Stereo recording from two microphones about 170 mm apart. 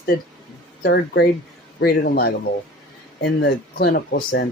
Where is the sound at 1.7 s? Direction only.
65° left (ahead or behind).